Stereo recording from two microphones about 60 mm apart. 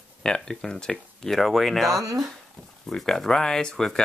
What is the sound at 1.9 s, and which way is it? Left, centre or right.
Speech, right.